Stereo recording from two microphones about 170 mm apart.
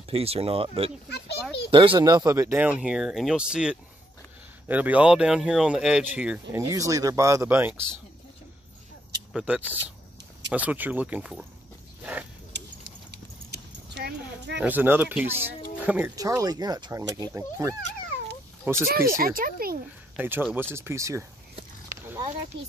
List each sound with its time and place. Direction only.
0.1 s speech: 35° right (ahead or behind)
1.0 s a child's voice: 75° left (ahead or behind)
1.7 s speech: 30° right (ahead or behind); by 6.6 s 5° right (ahead or behind)
6.7 s speech: 20° right (ahead or behind)
9.3 s speech: 5° right (ahead or behind)
12.0 s a sound: 10° right (ahead or behind)
13.1 s horse: 75° right (ahead or behind)
14.6 s speech: 10° right (ahead or behind)
16.2 s speech: 20° right (ahead or behind)
19.0 s speech: 60° right (ahead or behind)
20.2 s speech: 10° right (ahead or behind)